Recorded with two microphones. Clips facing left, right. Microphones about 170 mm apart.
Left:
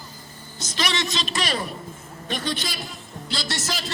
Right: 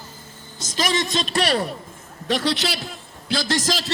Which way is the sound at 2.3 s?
80° right.